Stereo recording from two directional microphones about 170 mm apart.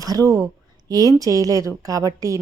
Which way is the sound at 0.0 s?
20° right (ahead or behind).